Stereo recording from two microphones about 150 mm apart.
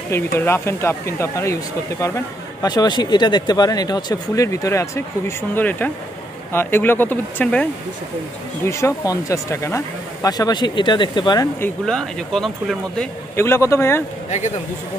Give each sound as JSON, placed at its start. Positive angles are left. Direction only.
{"t": 0.1, "sound": "speech", "side_deg": 15}
{"t": 8.6, "sound": "speech", "side_deg": 20}
{"t": 11.8, "sound": "speech", "side_deg": 0}
{"t": 13.4, "sound": "speech", "side_deg": 15}